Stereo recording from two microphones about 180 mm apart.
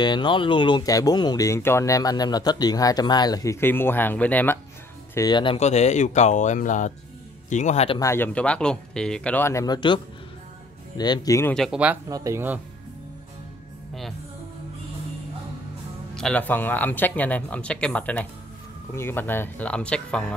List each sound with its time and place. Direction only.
0.0 s speech: 25° left (ahead or behind); by 4.6 s 10° left (ahead or behind)
5.1 s speech: 20° left (ahead or behind)
8.0 s speech: 15° left (ahead or behind)
11.0 s speech: 20° left (ahead or behind)
11.5 s speech: centre (ahead or behind)
12.1 s speech: 20° right (ahead or behind)
16.2 s speech: 5° left (ahead or behind)